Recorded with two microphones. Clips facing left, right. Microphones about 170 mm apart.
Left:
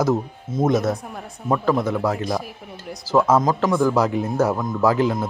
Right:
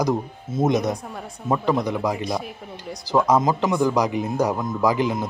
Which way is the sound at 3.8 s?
15° right (ahead or behind).